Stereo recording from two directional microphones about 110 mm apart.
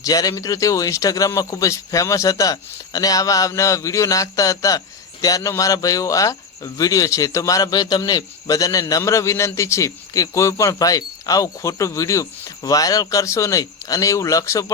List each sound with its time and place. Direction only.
0.0 s speech: 35° left (ahead or behind)